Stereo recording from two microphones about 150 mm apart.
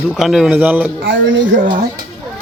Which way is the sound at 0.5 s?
10° right (ahead or behind).